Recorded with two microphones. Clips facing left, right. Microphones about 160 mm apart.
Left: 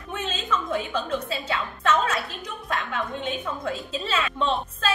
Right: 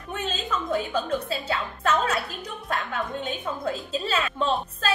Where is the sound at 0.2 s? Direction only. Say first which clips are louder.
Left 1 dB; 40° right (ahead or behind).